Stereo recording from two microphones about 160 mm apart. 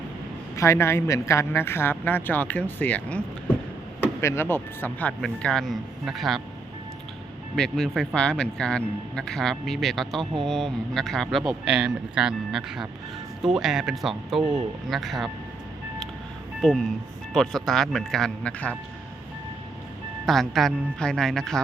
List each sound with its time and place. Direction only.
0.5 s speech: 20° left (ahead or behind); by 6.4 s centre (ahead or behind)
7.5 s a man's voice: 5° left (ahead or behind)
16.6 s a man's voice: centre (ahead or behind)
20.2 s a man's voice: centre (ahead or behind)